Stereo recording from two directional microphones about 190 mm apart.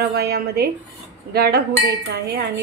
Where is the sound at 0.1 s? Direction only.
55° right (ahead or behind).